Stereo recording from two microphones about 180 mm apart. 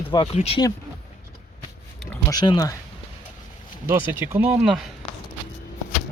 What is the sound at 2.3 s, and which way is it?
Speech, 20° left (ahead or behind).